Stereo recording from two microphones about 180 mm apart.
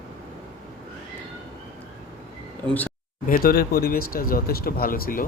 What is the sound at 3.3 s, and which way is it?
Speech, 55° left (ahead or behind).